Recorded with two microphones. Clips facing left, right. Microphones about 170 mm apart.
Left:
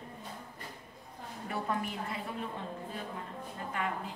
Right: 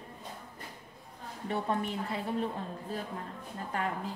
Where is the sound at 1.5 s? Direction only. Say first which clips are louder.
Right 3 dB; 30° right (ahead or behind).